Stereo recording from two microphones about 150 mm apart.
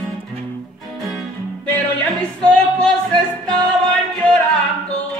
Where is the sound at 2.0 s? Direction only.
5° left (ahead or behind).